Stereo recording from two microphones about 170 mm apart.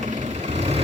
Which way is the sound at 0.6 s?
40° right (ahead or behind).